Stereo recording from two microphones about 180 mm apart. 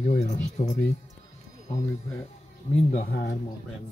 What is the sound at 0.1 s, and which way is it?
Speech, 40° left (ahead or behind).